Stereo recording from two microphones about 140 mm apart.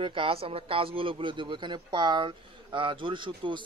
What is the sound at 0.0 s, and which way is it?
A man's voice, 35° right (ahead or behind).